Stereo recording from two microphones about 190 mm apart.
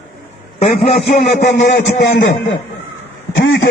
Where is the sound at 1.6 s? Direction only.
55° left (ahead or behind).